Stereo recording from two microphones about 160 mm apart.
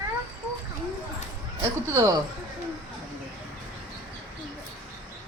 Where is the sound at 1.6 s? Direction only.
20° right (ahead or behind).